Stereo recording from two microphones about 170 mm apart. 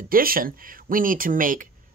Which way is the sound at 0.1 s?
60° right (ahead or behind).